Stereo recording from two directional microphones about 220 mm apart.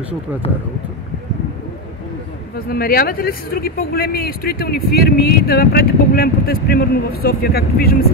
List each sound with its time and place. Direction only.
0.4 s speech: 25° left (ahead or behind)
2.5 s speech: 40° left (ahead or behind)